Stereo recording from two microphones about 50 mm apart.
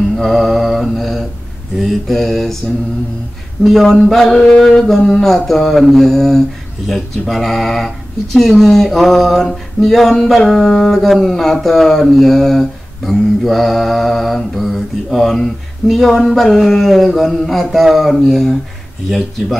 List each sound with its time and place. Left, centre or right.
0.1 s mantra: centre
1.8 s speech: centre
3.6 s speech: centre